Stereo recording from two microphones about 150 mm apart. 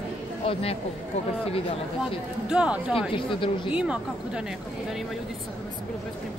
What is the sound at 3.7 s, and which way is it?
Speech, 5° right (ahead or behind).